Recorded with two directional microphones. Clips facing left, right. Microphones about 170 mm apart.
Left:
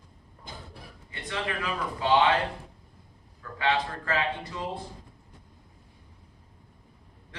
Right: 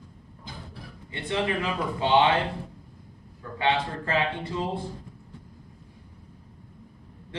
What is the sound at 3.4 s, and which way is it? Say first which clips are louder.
A man's voice: right 2 dB; 25° right (ahead or behind).